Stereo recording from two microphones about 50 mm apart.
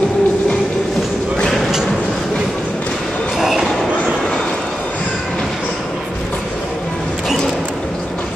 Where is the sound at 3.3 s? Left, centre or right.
Centre.